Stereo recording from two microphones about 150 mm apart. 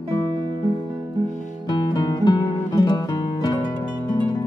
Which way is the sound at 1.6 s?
30° left (ahead or behind).